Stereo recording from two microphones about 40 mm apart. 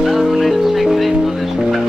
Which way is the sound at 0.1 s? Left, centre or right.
Centre.